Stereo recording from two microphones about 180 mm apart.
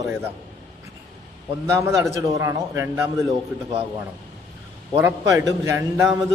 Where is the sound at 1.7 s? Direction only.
15° right (ahead or behind).